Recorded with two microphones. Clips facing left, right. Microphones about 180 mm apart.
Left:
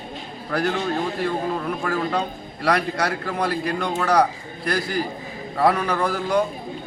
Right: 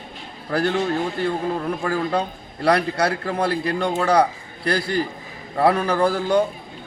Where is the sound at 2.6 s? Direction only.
30° right (ahead or behind).